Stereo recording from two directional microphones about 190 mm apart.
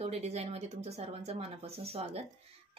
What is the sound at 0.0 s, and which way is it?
Speech, 35° right (ahead or behind).